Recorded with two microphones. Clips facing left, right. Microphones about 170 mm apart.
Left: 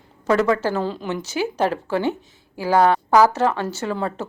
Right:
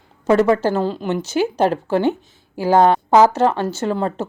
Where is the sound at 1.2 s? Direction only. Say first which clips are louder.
Right 5 dB; 10° left (ahead or behind).